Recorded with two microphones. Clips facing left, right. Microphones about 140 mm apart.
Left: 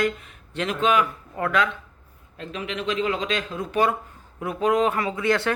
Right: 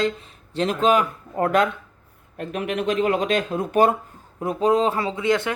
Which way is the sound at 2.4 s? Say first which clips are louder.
Right 5 dB; 55° right (ahead or behind).